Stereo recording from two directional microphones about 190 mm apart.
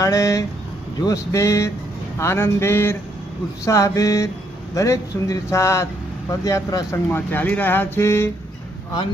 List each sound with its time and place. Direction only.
0.0 s speech: 15° left (ahead or behind)